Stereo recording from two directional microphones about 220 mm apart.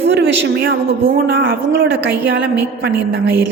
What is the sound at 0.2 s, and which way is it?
Speech, 55° right (ahead or behind).